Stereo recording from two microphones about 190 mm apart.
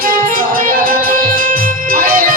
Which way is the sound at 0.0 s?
50° right (ahead or behind).